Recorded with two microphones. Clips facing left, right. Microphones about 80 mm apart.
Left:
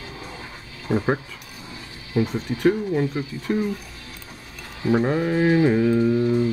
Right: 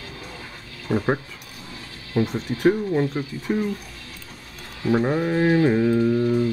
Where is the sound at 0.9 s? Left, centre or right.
Centre.